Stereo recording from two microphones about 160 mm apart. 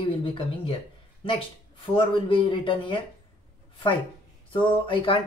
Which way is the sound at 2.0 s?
30° left (ahead or behind).